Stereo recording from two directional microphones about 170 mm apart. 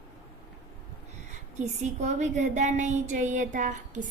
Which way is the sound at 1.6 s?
45° right (ahead or behind).